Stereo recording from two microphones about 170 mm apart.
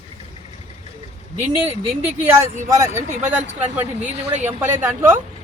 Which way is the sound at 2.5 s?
45° right (ahead or behind).